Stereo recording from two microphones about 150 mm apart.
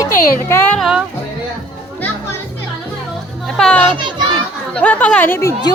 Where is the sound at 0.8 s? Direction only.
5° right (ahead or behind).